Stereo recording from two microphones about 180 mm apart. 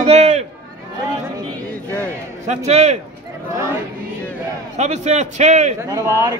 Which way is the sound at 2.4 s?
40° right (ahead or behind).